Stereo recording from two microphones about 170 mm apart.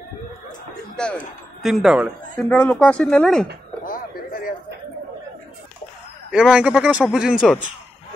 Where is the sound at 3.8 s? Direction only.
55° left (ahead or behind).